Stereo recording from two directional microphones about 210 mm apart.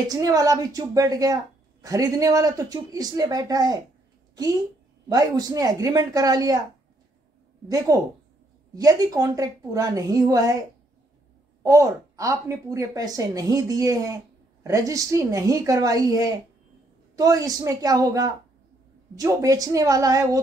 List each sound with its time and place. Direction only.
0.1 s a woman's voice: 15° right (ahead or behind)
5.1 s a woman's voice: 15° right (ahead or behind)
7.6 s a woman's voice: 15° right (ahead or behind)
11.6 s a woman's voice: 15° right (ahead or behind)